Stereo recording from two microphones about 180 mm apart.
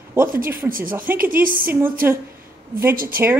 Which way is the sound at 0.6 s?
50° right (ahead or behind).